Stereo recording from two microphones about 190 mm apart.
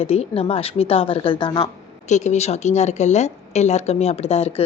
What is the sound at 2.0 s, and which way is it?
A woman's voice, 40° left (ahead or behind).